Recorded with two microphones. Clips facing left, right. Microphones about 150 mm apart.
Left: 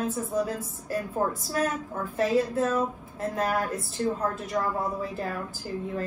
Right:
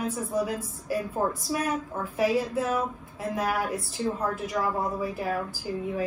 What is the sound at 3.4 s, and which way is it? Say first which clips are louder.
A woman's voice: left 1 dB; centre (ahead or behind).